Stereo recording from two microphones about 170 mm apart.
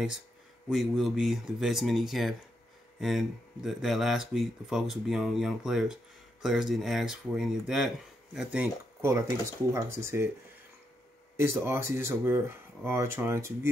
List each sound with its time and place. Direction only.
0.7 s speech: centre (ahead or behind)
11.3 s speech: 15° right (ahead or behind)